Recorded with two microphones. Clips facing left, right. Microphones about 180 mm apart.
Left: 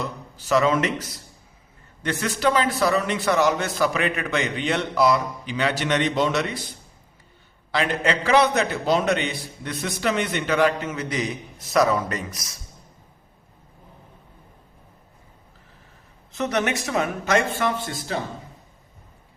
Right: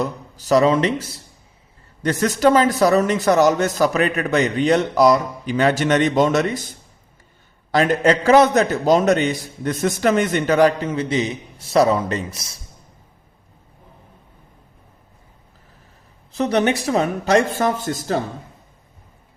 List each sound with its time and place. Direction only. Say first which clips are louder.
0.0 s speech: right 7 dB; 40° right (ahead or behind)
2.0 s a man's voice: right 7 dB; 40° right (ahead or behind)
16.3 s speech: right 6 dB; 35° right (ahead or behind)